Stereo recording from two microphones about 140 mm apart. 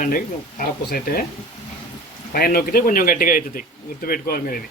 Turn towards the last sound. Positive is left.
turn(degrees=90)